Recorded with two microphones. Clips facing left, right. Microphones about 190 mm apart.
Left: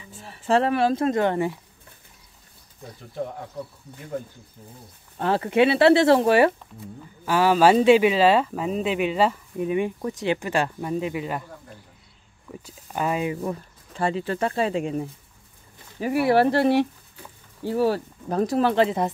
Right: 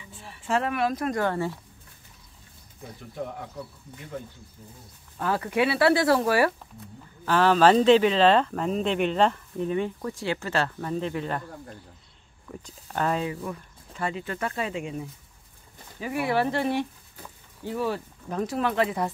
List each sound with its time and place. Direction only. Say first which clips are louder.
0.2 s speech: left 6 dB; 40° left (ahead or behind); by 1.6 s 20° left (ahead or behind)
5.1 s speech: left 5 dB; 25° left (ahead or behind)
7.2 s speech: left 1 dB; 10° left (ahead or behind)
12.4 s speech: left 1 dB; 10° left (ahead or behind)
13.4 s speech: left 6 dB; 30° left (ahead or behind)